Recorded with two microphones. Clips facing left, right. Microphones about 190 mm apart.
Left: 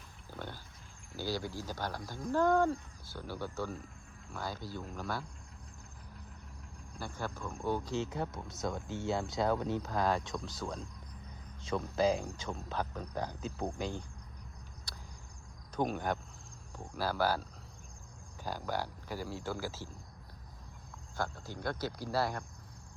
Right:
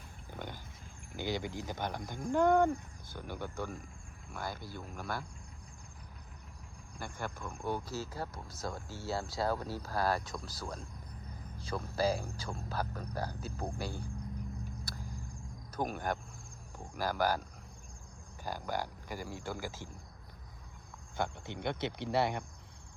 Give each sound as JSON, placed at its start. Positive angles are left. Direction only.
{"t": 0.3, "sound": "pig", "side_deg": -15}
{"t": 1.1, "sound": "speech", "side_deg": -20}
{"t": 7.3, "sound": "speech", "side_deg": -15}
{"t": 15.7, "sound": "speech", "side_deg": -5}
{"t": 18.4, "sound": "speech", "side_deg": -10}
{"t": 21.2, "sound": "speech", "side_deg": -20}